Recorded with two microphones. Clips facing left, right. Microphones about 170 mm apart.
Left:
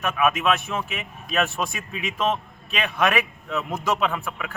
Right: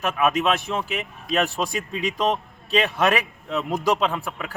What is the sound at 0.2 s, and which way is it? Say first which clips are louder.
Speech: even; 30° right (ahead or behind).